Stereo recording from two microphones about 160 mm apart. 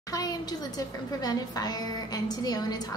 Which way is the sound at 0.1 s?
25° left (ahead or behind).